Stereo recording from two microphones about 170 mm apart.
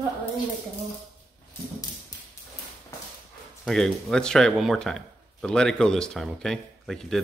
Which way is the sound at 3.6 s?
5° left (ahead or behind).